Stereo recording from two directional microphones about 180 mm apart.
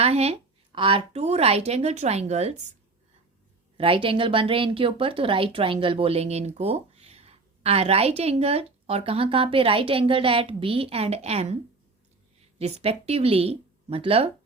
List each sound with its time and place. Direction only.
0.0 s speech: 35° right (ahead or behind)
3.8 s speech: 30° right (ahead or behind)